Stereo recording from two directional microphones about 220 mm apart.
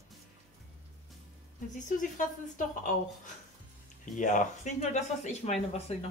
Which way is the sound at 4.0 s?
35° left (ahead or behind).